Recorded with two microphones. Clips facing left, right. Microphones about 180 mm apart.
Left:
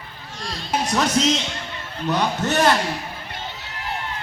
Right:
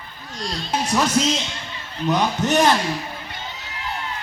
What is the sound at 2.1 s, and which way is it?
Speech, 15° right (ahead or behind).